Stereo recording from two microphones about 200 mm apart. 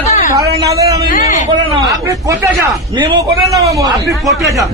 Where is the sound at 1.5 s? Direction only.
20° right (ahead or behind).